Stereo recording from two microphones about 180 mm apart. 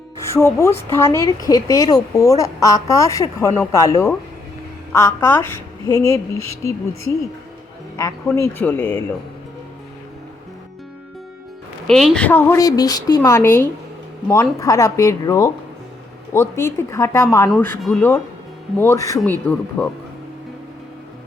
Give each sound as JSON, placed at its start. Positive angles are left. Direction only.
{"t": 0.2, "sound": "a woman's voice", "side_deg": 15}
{"t": 8.4, "sound": "a woman's voice", "side_deg": 10}
{"t": 11.9, "sound": "a woman's voice", "side_deg": 0}
{"t": 19.8, "sound": "speech", "side_deg": 5}